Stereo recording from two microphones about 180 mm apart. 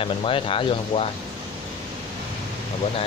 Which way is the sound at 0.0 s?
30° left (ahead or behind).